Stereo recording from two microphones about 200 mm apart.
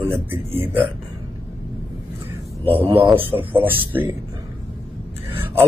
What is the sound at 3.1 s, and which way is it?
Speech, 10° right (ahead or behind).